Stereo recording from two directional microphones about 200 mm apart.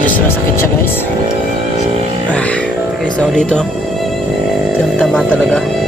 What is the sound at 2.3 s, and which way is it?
Speech, 5° left (ahead or behind).